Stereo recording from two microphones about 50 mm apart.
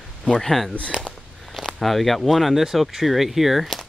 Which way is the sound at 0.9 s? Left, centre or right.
Centre.